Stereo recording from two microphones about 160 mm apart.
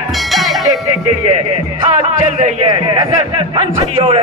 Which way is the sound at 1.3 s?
45° right (ahead or behind).